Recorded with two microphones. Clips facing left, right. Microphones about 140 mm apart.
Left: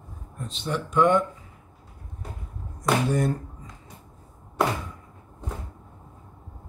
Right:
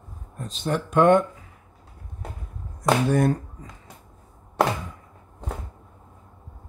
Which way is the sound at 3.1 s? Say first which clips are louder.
Right 4 dB; 60° right (ahead or behind).